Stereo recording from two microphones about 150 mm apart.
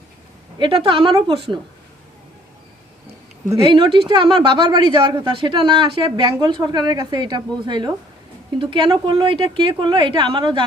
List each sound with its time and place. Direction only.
0.6 s speech: 35° right (ahead or behind)
3.6 s speech: 35° right (ahead or behind)